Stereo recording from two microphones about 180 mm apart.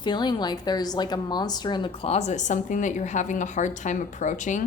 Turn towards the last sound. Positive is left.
turn(degrees=45)  # may be behind; listen again after turning